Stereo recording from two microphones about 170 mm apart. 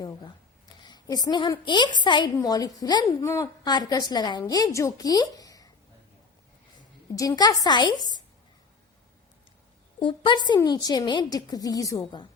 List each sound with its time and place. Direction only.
0.8 s a woman's voice: 25° left (ahead or behind)
7.2 s a woman's voice: 20° left (ahead or behind)
10.0 s a woman's voice: 30° left (ahead or behind)